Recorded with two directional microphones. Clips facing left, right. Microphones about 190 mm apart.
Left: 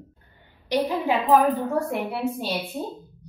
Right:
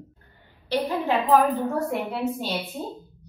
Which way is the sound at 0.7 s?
10° left (ahead or behind).